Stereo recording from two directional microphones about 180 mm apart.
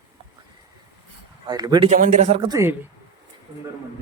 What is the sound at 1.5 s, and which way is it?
Speech, 20° right (ahead or behind).